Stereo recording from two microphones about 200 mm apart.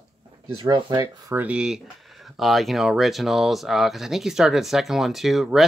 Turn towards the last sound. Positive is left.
turn(degrees=0)  # may be behind; listen again after turning